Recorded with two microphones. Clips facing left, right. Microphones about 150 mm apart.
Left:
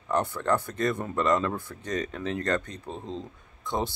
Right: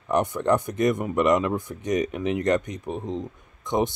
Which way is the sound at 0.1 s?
20° right (ahead or behind).